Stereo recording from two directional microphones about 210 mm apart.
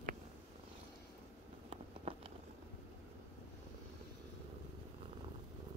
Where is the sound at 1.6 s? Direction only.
25° right (ahead or behind).